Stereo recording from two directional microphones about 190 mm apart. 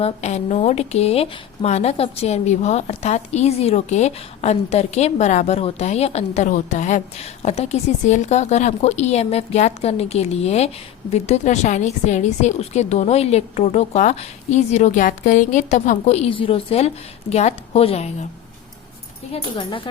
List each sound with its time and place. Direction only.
0.0 s a woman's voice: 35° left (ahead or behind)
19.3 s speech: 25° left (ahead or behind)